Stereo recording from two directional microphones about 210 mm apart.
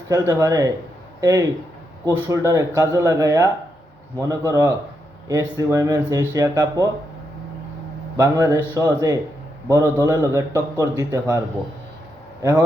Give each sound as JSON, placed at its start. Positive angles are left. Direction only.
{"t": 0.1, "sound": "a man's voice", "side_deg": -15}
{"t": 8.1, "sound": "a man's voice", "side_deg": -15}